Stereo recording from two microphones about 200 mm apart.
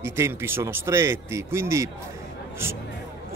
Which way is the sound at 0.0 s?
10° right (ahead or behind).